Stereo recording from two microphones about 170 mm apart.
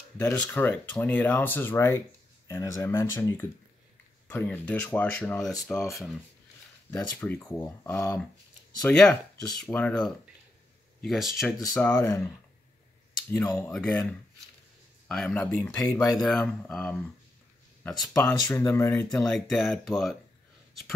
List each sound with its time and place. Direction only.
0.2 s speech: 10° left (ahead or behind)
6.9 s speech: 10° left (ahead or behind)
11.7 s speech: 10° left (ahead or behind)
13.3 s speech: 15° left (ahead or behind)
18.5 s speech: 15° left (ahead or behind)
19.2 s speech: centre (ahead or behind)